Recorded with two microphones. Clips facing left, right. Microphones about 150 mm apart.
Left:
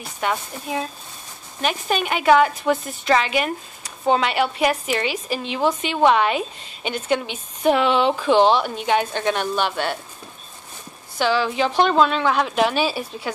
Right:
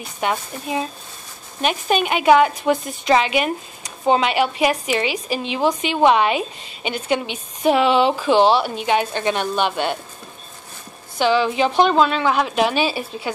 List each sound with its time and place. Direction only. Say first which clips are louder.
0.2 s a woman's voice: right 2 dB; 15° right (ahead or behind)
11.1 s a woman's voice: right 3 dB; 15° right (ahead or behind)